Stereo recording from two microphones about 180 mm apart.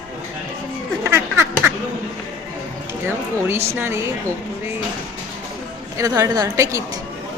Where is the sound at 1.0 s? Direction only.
15° right (ahead or behind).